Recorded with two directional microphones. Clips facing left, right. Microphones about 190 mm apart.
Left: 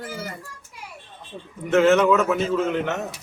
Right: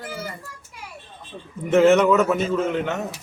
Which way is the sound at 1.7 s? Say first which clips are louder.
Right 1 dB; 10° right (ahead or behind).